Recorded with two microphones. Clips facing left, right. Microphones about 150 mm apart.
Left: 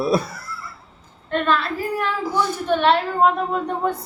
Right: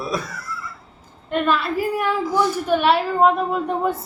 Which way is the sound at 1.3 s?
10° right (ahead or behind).